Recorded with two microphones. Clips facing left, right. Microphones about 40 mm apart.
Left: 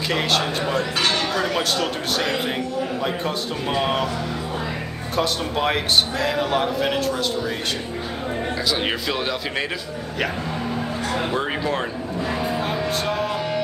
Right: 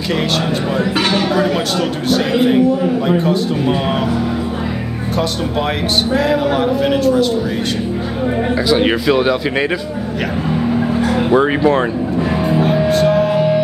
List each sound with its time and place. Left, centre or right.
0.7 s speech: centre
5.1 s speech: centre
8.6 s speech: centre
11.3 s speech: centre
12.9 s music: centre